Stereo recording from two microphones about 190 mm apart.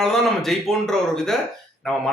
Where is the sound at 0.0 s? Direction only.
Centre (ahead or behind).